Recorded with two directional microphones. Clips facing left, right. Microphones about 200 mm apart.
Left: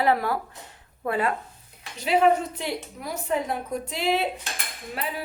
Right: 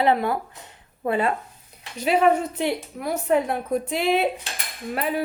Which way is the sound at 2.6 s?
60° right (ahead or behind).